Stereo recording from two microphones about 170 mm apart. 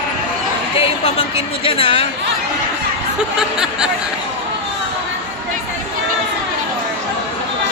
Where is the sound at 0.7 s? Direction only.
35° left (ahead or behind).